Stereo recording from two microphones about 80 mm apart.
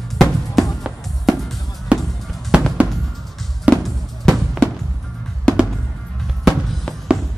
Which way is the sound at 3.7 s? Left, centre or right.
Centre.